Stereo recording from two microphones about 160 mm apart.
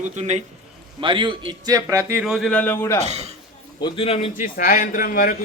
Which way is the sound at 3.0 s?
45° right (ahead or behind).